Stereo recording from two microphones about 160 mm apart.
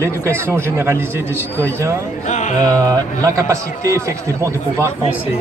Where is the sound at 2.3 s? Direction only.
50° left (ahead or behind).